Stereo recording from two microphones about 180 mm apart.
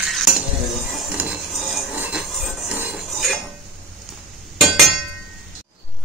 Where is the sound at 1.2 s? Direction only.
5° right (ahead or behind).